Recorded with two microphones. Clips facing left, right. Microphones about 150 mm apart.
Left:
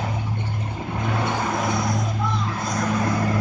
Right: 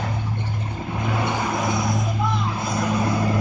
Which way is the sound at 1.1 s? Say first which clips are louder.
Even; 5° right (ahead or behind).